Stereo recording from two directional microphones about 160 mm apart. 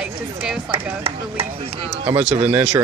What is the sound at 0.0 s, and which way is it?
Speech, 5° right (ahead or behind).